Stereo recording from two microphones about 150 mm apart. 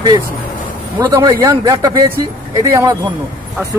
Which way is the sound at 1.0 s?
25° right (ahead or behind).